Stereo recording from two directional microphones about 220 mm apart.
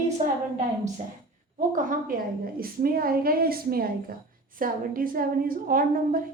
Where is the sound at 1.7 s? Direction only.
40° right (ahead or behind).